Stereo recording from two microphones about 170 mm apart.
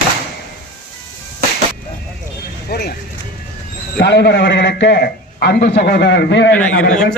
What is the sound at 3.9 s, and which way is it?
A man's voice, 80° left.